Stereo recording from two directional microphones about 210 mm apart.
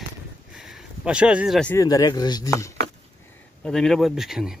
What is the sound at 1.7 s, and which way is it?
Speech, 15° left (ahead or behind).